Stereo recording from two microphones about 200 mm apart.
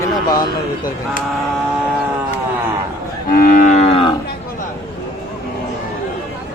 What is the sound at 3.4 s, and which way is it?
Moo, 45° left (ahead or behind).